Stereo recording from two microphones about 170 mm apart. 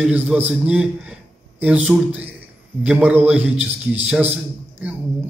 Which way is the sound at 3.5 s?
40° right (ahead or behind).